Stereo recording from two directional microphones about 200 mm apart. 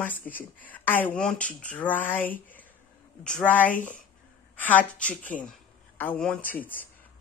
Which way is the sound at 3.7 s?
40° left (ahead or behind).